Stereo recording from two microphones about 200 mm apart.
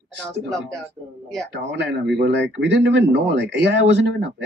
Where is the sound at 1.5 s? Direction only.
60° right (ahead or behind).